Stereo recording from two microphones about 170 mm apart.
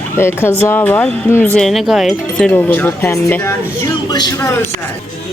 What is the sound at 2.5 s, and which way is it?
Speech, 10° left (ahead or behind).